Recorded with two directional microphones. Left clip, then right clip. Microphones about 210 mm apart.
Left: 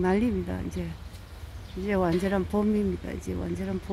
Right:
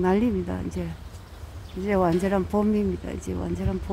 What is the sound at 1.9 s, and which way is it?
Speech, 10° right (ahead or behind).